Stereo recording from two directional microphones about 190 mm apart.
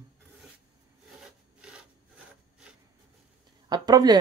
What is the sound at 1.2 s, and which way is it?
Sawing, 5° right (ahead or behind).